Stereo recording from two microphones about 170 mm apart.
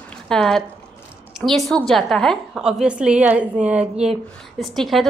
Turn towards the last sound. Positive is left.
turn(degrees=0)  # may be behind; listen again after turning